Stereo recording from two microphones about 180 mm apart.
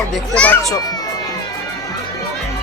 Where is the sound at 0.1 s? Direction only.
5° left (ahead or behind).